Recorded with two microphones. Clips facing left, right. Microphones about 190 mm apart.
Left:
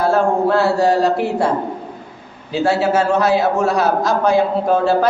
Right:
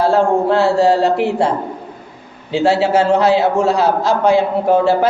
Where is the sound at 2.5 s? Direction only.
25° right (ahead or behind).